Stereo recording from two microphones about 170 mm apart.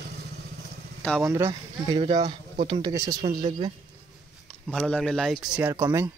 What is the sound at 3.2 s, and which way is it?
Speech, 30° right (ahead or behind).